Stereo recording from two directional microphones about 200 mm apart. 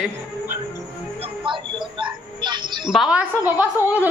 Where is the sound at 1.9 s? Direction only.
20° right (ahead or behind).